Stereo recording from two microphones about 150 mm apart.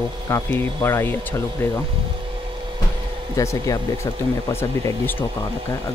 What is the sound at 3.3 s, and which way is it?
Speech, 20° left (ahead or behind).